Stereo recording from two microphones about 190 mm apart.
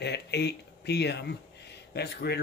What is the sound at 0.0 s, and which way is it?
Speech, 60° left (ahead or behind).